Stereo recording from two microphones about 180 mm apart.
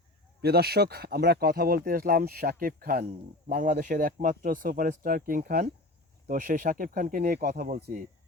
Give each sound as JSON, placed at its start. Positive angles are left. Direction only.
{"t": 0.4, "sound": "speech", "side_deg": -60}